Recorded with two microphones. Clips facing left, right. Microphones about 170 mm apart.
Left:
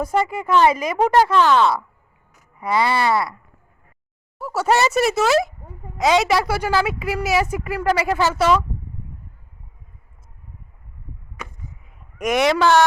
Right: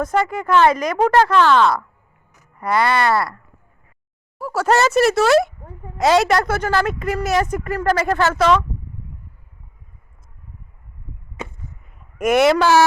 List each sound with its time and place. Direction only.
0.0 s a woman's voice: 5° left (ahead or behind)
11.4 s chop: 25° right (ahead or behind)
11.9 s a man's voice: centre (ahead or behind)